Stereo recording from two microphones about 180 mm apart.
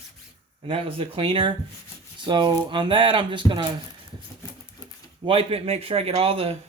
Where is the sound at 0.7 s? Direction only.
30° right (ahead or behind).